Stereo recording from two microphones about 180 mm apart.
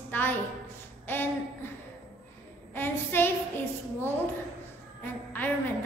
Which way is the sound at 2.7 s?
10° left (ahead or behind).